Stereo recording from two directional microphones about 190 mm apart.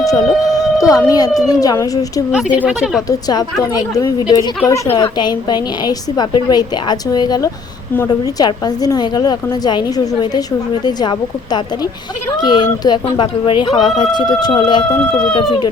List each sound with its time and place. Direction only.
0.0 s a woman's voice: 20° left (ahead or behind)
2.3 s a woman's voice: 5° right (ahead or behind)
3.1 s a woman's voice: 20° left (ahead or behind)